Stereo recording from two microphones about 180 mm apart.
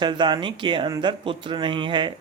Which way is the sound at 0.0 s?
25° right (ahead or behind).